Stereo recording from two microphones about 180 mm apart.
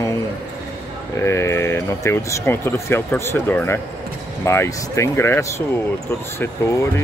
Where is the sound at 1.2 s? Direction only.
15° left (ahead or behind).